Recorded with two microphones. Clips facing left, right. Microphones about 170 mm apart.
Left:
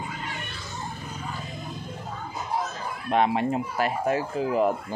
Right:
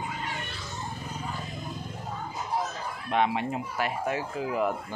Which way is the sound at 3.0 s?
40° left (ahead or behind).